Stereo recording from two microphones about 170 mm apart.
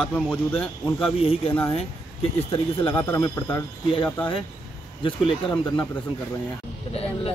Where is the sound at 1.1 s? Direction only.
35° left (ahead or behind).